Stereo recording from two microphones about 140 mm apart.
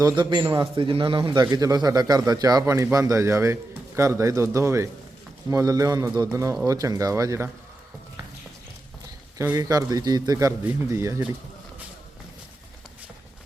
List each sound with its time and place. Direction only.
0.0 s a man's voice: 35° right (ahead or behind)
9.6 s a man's voice: 25° right (ahead or behind)
10.6 s a man's voice: 15° right (ahead or behind)